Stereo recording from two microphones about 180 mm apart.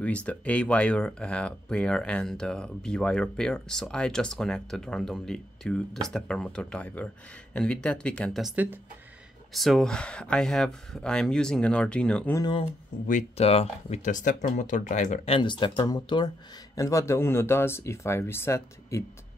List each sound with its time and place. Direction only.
0.0 s speech: 5° left (ahead or behind)
12.4 s speech: 25° left (ahead or behind)
12.9 s speech: 50° left (ahead or behind)
13.4 s speech: 35° left (ahead or behind)
15.3 s speech: 25° left (ahead or behind)